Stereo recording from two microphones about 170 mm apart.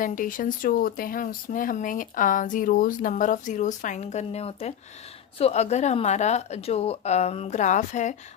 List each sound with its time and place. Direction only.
0.0 s a woman's voice: 50° left (ahead or behind)